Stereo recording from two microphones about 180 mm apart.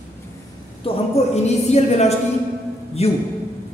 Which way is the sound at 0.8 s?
35° left (ahead or behind).